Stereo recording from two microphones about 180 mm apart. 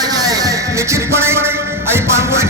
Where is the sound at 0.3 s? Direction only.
20° right (ahead or behind).